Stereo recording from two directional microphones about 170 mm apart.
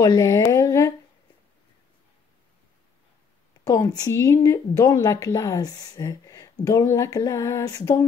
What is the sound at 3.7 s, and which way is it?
A woman's voice, 20° left (ahead or behind).